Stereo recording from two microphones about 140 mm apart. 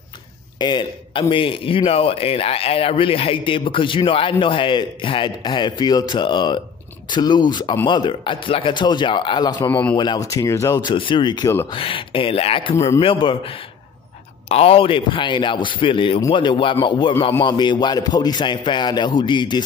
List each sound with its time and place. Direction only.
0.6 s speech: 30° left (ahead or behind)
10.9 s speech: 35° left (ahead or behind)